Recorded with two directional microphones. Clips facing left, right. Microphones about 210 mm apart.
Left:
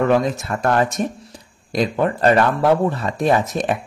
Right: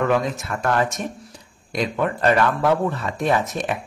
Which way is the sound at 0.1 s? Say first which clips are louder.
Left 4 dB; 35° left (ahead or behind).